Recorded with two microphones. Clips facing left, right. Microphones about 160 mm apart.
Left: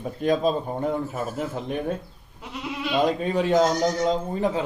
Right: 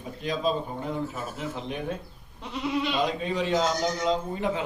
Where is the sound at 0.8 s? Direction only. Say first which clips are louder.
Left 5 dB; 50° left (ahead or behind).